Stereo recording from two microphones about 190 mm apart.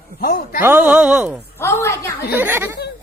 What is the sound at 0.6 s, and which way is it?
Speech, 10° right (ahead or behind).